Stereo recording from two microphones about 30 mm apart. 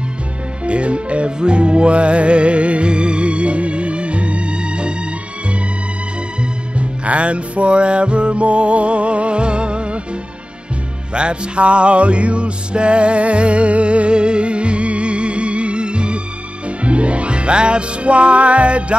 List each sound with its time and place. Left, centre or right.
0.7 s music: right
6.8 s music: right
11.1 s music: right